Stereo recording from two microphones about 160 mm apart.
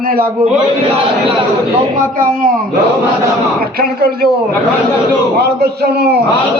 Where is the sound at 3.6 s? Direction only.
70° right (ahead or behind).